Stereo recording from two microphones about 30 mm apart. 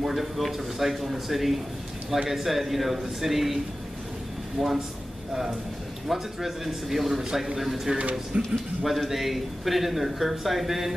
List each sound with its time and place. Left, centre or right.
0.0 s a man's voice: centre
4.6 s a man's voice: centre
6.0 s a man's voice: centre
8.3 s speech: right
8.8 s a man's voice: centre